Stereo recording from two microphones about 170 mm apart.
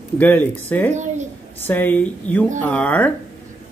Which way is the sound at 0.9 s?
45° right (ahead or behind).